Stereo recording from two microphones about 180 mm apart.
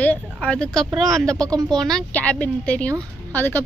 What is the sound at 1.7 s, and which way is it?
A woman's voice, 5° left (ahead or behind).